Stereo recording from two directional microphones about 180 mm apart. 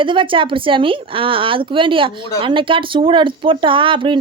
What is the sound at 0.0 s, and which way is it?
Speech, 25° right (ahead or behind).